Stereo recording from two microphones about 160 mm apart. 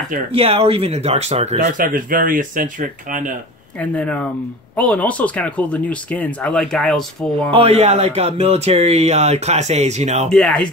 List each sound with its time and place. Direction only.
0.3 s speech: 35° right (ahead or behind); by 3.3 s 55° right (ahead or behind)
3.8 s speech: 10° left (ahead or behind)
7.5 s speech: 40° right (ahead or behind)
10.3 s speech: 5° left (ahead or behind)